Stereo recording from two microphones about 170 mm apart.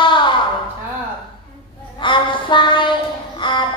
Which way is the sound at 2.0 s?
30° left (ahead or behind).